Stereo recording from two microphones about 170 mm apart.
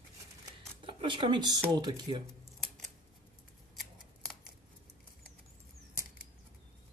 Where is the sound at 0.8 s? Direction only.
30° right (ahead or behind).